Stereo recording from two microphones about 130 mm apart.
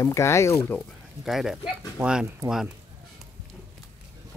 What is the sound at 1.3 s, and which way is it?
Speech, centre (ahead or behind).